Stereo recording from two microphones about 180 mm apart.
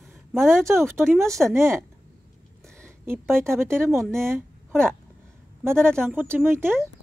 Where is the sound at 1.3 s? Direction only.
Centre (ahead or behind).